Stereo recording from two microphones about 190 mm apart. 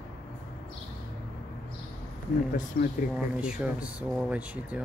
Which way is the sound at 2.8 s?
55° left (ahead or behind).